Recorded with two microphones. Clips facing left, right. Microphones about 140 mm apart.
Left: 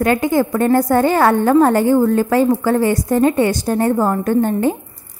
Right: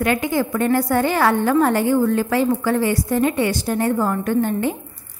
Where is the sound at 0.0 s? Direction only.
45° left (ahead or behind).